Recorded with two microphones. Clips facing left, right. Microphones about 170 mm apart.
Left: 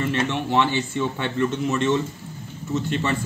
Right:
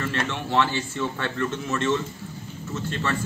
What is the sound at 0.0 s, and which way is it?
A man's voice, 15° left (ahead or behind).